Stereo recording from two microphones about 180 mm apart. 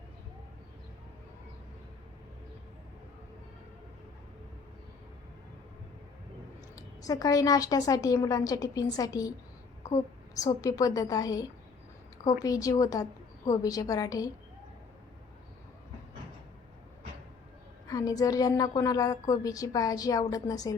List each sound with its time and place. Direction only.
6.7 s a woman's voice: 20° left (ahead or behind)
9.8 s a sound: 20° left (ahead or behind)
10.6 s a woman's voice: 20° left (ahead or behind)
17.8 s a woman's voice: 20° left (ahead or behind)